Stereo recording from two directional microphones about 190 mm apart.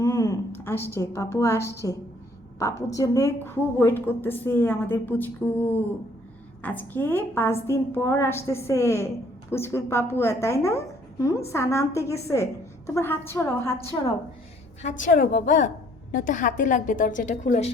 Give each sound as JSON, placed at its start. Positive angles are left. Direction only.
{"t": 0.0, "sound": "a woman's voice", "side_deg": 15}
{"t": 14.8, "sound": "a woman's voice", "side_deg": 40}